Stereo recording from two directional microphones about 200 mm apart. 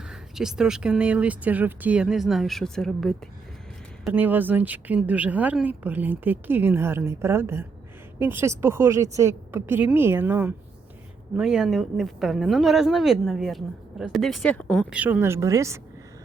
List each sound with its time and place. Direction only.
0.0 s speech: 5° right (ahead or behind)
4.0 s speech: 10° right (ahead or behind)